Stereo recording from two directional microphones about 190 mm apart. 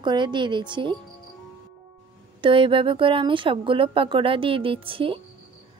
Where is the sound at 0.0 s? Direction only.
25° right (ahead or behind).